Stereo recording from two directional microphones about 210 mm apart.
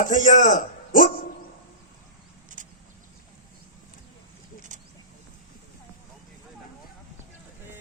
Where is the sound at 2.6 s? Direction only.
40° right (ahead or behind).